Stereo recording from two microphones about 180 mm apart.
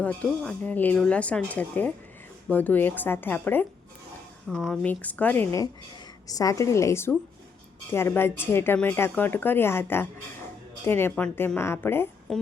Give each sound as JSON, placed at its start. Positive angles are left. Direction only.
{"t": 0.0, "sound": "speech", "side_deg": 5}